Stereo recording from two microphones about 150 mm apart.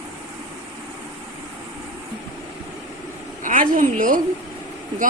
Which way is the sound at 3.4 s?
65° right (ahead or behind).